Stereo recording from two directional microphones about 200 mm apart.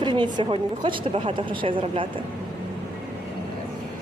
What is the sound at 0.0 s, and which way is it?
A woman's voice, 20° right (ahead or behind).